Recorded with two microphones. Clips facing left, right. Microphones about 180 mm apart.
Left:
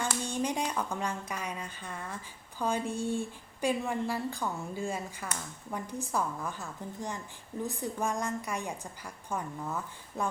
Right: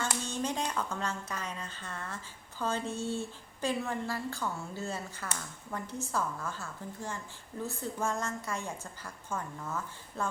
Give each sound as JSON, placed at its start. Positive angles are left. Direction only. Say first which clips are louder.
{"t": 0.3, "sound": "a woman's voice", "louder": "left 2 dB", "side_deg": 15}